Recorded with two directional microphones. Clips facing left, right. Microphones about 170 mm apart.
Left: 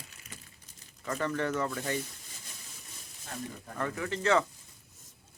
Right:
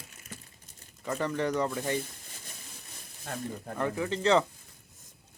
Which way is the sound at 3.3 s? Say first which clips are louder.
Right 4 dB; 65° right (ahead or behind).